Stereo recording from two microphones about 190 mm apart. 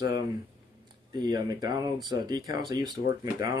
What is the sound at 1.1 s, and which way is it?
Speech, 20° right (ahead or behind).